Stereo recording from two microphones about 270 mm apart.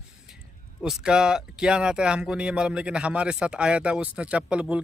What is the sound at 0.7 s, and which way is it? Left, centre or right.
Speech, centre.